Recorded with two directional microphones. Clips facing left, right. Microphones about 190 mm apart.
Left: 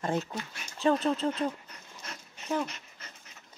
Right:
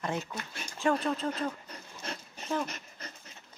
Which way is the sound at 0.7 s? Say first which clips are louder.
Left 3 dB; 20° left (ahead or behind).